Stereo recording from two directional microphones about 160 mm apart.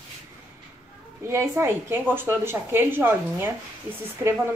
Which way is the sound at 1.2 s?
15° right (ahead or behind).